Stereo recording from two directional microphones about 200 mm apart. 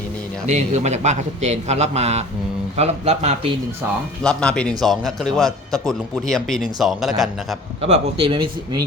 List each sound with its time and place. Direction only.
0.4 s a man's voice: 35° right (ahead or behind)
4.2 s a man's voice: 5° left (ahead or behind)
7.8 s speech: 35° right (ahead or behind)